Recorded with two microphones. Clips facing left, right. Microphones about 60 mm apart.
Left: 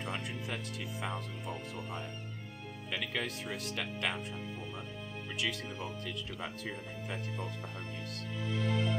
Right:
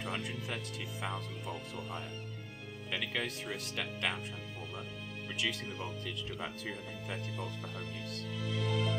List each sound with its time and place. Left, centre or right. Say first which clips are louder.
0.0 s speech: even; centre
5.3 s speech: even; centre
8.5 s music: left 1 dB; left